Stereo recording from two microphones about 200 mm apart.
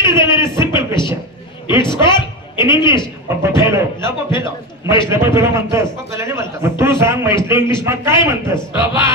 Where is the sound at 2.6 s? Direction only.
15° right (ahead or behind).